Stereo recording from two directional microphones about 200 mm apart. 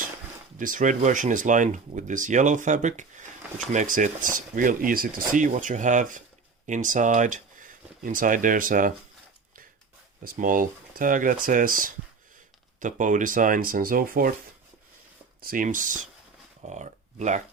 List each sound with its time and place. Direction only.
0.5 s speech: 40° right (ahead or behind)
10.2 s speech: 45° right (ahead or behind)
15.4 s speech: 45° right (ahead or behind)